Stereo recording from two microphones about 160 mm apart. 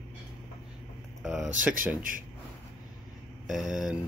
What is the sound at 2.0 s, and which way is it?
Speech, 60° right (ahead or behind).